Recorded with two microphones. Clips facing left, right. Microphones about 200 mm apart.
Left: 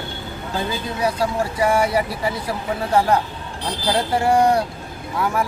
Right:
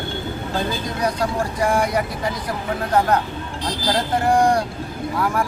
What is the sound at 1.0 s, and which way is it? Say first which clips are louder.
A woman's voice: left 1 dB; 5° left (ahead or behind).